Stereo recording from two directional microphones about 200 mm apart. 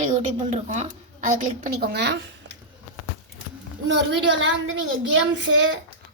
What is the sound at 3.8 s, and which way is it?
A child's voice, 60° right (ahead or behind).